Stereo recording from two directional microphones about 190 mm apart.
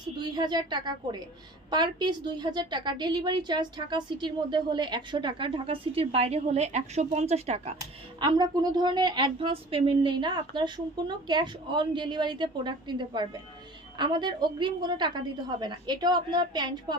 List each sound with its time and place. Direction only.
0.3 s a woman's voice: 20° right (ahead or behind)
8.2 s a woman's voice: 25° right (ahead or behind)